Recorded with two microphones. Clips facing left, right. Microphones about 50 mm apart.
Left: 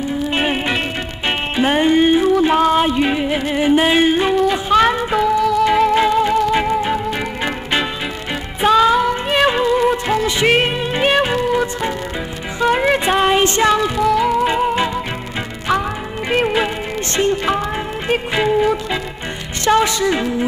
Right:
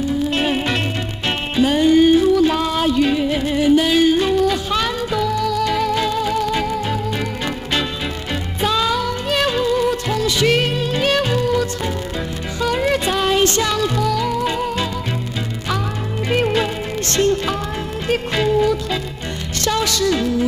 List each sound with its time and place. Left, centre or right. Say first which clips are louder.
0.3 s music: left 1 dB; left
1.6 s music: right 1 dB; left
8.5 s music: left 7 dB; left
16.3 s music: left 1 dB; centre